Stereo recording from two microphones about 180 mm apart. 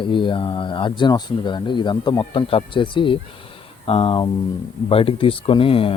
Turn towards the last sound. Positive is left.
turn(degrees=30)  # may be behind; listen again after turning